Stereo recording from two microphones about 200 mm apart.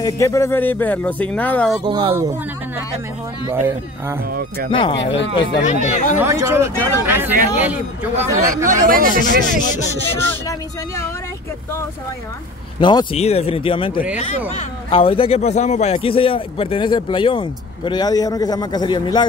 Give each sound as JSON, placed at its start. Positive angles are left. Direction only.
{"t": 0.0, "sound": "speech", "side_deg": 15}
{"t": 1.9, "sound": "speech", "side_deg": -20}
{"t": 4.3, "sound": "speech", "side_deg": -50}
{"t": 4.6, "sound": "a man's voice", "side_deg": 25}
{"t": 5.6, "sound": "speech", "side_deg": 35}
{"t": 6.1, "sound": "speech", "side_deg": -10}
{"t": 8.6, "sound": "speech", "side_deg": -45}
{"t": 12.8, "sound": "a man's voice", "side_deg": 25}